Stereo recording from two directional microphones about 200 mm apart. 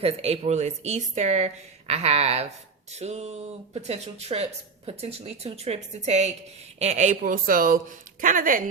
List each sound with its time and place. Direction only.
0.0 s speech: 30° right (ahead or behind)